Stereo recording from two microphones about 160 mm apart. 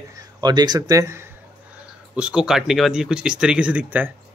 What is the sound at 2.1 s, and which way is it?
Speech, 5° right (ahead or behind).